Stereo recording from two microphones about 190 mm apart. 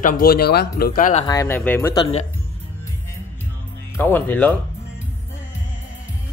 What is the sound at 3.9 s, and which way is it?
Speech, 10° left (ahead or behind).